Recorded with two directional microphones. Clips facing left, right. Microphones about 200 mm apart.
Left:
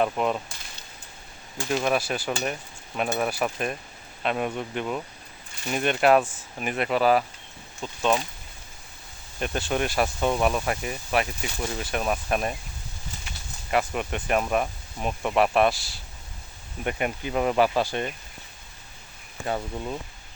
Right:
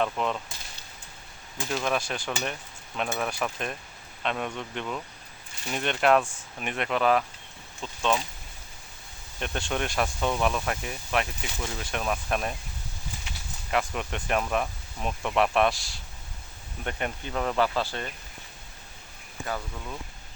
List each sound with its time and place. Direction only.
0.0 s cutlery: 10° left (ahead or behind)
1.7 s cutlery: 5° left (ahead or behind)
5.7 s speech: 5° left (ahead or behind)
9.4 s speech: 5° left (ahead or behind)
13.7 s speech: 5° left (ahead or behind)
14.4 s cutlery: 10° left (ahead or behind)
15.0 s speech: 5° left (ahead or behind)
16.8 s cutlery: 10° left (ahead or behind)
19.5 s speech: 30° left (ahead or behind)